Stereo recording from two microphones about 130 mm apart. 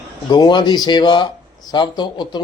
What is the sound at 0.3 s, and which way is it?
Speech, 35° left (ahead or behind).